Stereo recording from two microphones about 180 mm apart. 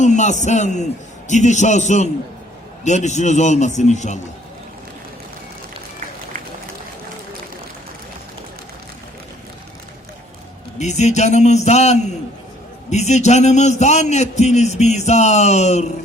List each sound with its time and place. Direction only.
0.0 s a man's voice: 40° left (ahead or behind)
10.8 s a man's voice: 40° left (ahead or behind)